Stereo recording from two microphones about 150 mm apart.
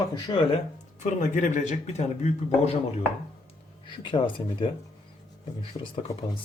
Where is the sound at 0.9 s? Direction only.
55° left (ahead or behind).